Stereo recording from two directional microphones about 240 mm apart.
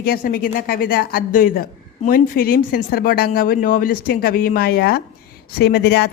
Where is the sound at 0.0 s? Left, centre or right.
Left.